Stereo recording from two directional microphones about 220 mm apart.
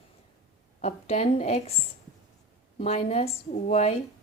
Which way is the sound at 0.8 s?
30° left (ahead or behind).